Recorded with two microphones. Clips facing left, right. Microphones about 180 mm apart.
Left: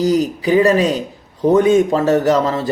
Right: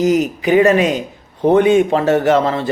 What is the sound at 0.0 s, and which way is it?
Speech, 35° left (ahead or behind).